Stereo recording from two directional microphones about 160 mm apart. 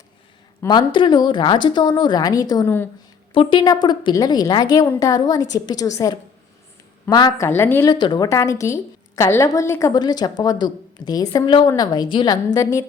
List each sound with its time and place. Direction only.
0.6 s a woman's voice: 25° left (ahead or behind)
2.6 s a woman's voice: 15° left (ahead or behind)
3.3 s a woman's voice: 30° left (ahead or behind); by 7.9 s 15° left (ahead or behind)
7.9 s a woman's voice: 25° left (ahead or behind)